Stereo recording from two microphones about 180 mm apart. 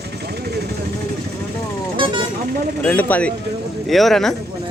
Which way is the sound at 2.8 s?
10° left (ahead or behind).